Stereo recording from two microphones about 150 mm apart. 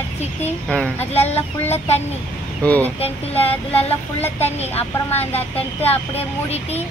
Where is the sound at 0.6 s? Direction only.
5° left (ahead or behind).